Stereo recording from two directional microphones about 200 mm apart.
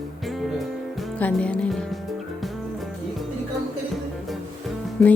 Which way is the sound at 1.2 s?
5° left (ahead or behind).